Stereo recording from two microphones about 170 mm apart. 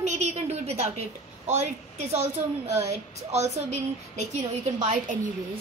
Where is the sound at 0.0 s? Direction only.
40° right (ahead or behind).